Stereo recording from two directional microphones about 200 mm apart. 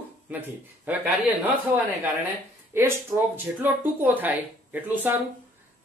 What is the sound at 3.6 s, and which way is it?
Speech, 10° right (ahead or behind).